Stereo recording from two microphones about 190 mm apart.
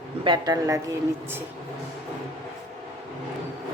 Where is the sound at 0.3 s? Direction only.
20° right (ahead or behind).